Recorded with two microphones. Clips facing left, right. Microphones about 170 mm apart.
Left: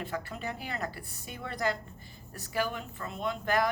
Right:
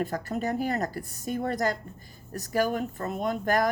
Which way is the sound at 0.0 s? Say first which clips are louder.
Right 7 dB; 45° right (ahead or behind).